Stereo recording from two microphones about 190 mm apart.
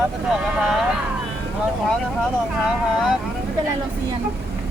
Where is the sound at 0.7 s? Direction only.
Centre (ahead or behind).